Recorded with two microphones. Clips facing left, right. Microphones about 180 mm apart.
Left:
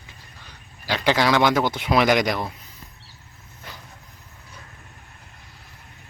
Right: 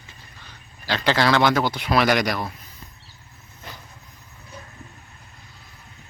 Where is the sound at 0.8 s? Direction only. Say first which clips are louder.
Even; 15° left (ahead or behind).